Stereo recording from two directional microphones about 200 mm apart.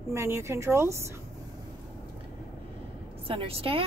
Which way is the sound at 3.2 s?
30° right (ahead or behind).